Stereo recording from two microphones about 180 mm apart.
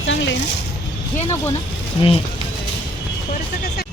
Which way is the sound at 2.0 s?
30° left (ahead or behind).